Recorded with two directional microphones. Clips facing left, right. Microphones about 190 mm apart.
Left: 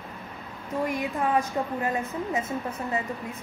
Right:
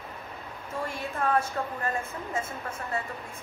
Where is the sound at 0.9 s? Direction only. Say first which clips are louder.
Left 1 dB; 15° left (ahead or behind).